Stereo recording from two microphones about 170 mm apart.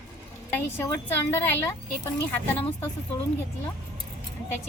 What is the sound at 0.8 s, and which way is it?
Speech, 15° left (ahead or behind).